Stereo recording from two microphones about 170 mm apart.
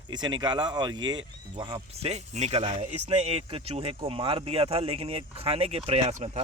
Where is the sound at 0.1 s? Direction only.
25° right (ahead or behind).